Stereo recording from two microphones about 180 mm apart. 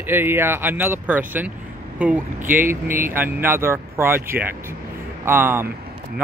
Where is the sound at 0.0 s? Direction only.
10° right (ahead or behind).